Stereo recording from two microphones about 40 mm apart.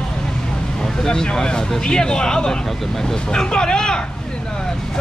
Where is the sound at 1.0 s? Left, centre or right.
Centre.